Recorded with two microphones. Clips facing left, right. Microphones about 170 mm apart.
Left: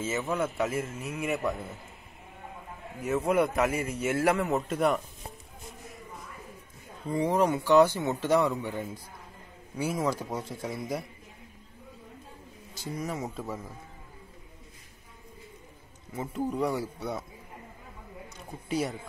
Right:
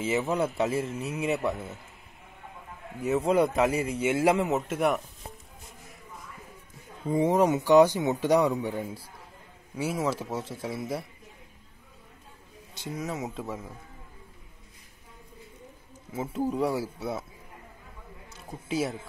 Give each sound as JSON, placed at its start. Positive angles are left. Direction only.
{"t": 0.0, "sound": "speech", "side_deg": -15}
{"t": 0.6, "sound": "speech", "side_deg": -30}
{"t": 3.1, "sound": "speech", "side_deg": -30}
{"t": 4.0, "sound": "speech", "side_deg": -15}
{"t": 7.1, "sound": "speech", "side_deg": -20}
{"t": 12.9, "sound": "speech", "side_deg": 0}
{"t": 16.1, "sound": "speech", "side_deg": -5}
{"t": 18.7, "sound": "speech", "side_deg": 0}